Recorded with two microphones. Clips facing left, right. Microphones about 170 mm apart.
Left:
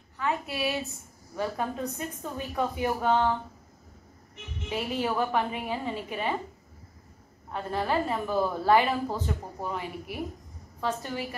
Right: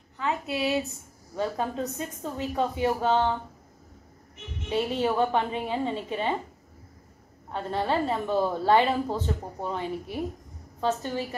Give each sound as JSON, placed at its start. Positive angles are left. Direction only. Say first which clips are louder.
{"t": 0.2, "sound": "a woman's voice", "louder": "right 2 dB", "side_deg": -20}
{"t": 4.6, "sound": "a woman's voice", "louder": "right 4 dB", "side_deg": -25}
{"t": 7.5, "sound": "a woman's voice", "louder": "right 1 dB", "side_deg": -25}